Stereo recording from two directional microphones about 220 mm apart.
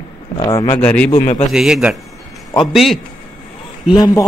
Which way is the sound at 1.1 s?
25° left (ahead or behind).